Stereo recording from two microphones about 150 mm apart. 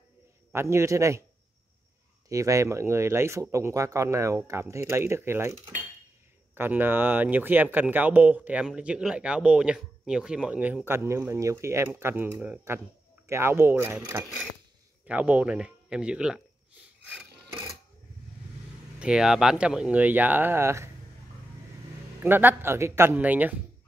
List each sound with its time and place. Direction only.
0.5 s speech: 15° right (ahead or behind)
2.2 s speech: 20° right (ahead or behind); by 16.4 s 5° right (ahead or behind)
18.9 s speech: 5° right (ahead or behind)
22.2 s speech: 15° right (ahead or behind)